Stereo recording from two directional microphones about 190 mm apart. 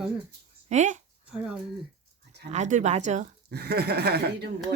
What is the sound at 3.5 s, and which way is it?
Speech, 55° right (ahead or behind).